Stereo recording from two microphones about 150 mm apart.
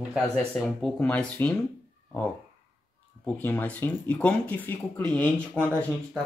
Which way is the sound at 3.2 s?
10° left (ahead or behind).